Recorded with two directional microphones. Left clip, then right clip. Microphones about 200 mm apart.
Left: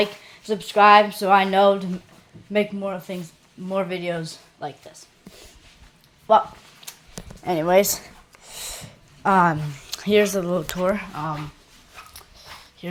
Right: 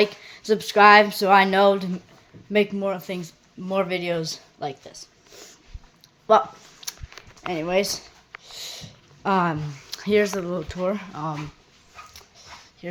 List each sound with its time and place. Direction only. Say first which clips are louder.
0.0 s speech: right 2 dB; 30° right (ahead or behind)
6.3 s speech: left 1 dB; 25° right (ahead or behind)
6.8 s dog: right 6 dB; 30° right (ahead or behind)
7.4 s speech: left 6 dB; 15° left (ahead or behind)
8.4 s a sound: left 1 dB; 15° left (ahead or behind)
9.2 s speech: left 5 dB; centre (ahead or behind)
12.8 s speech: even; 15° left (ahead or behind)